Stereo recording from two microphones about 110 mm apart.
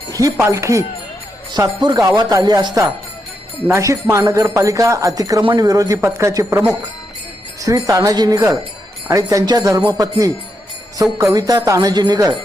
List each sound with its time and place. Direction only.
0.1 s speech: 30° right (ahead or behind)
1.5 s jingle bell: 40° right (ahead or behind)
3.7 s speech: 30° right (ahead or behind)
5.4 s speech: 50° right (ahead or behind)
5.6 s jingle bell: 35° right (ahead or behind)
6.0 s speech: 25° right (ahead or behind)
7.6 s jingle bell: 30° right (ahead or behind)